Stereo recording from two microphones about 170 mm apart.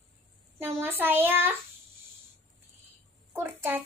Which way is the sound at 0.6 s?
15° right (ahead or behind).